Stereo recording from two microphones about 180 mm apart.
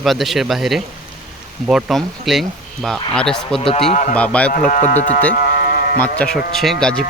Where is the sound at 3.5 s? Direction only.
30° left (ahead or behind).